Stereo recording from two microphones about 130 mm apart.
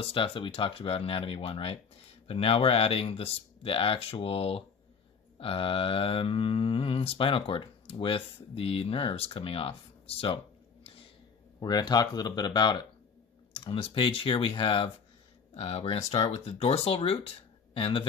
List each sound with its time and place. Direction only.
0.0 s speech: 45° left (ahead or behind)
11.6 s speech: 30° left (ahead or behind)